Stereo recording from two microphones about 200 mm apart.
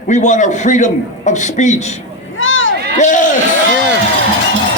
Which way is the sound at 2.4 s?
75° left (ahead or behind).